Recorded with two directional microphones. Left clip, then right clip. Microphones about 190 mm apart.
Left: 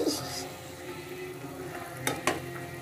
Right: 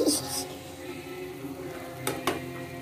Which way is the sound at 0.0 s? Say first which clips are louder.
Right 4 dB; 40° right (ahead or behind).